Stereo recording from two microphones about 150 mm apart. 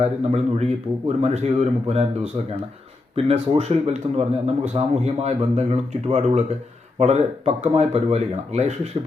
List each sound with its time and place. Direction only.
0.0 s speech: 45° right (ahead or behind)